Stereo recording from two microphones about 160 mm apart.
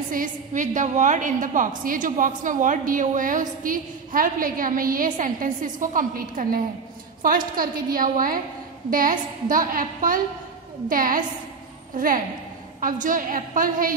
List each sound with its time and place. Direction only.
0.1 s a woman's voice: 55° right (ahead or behind)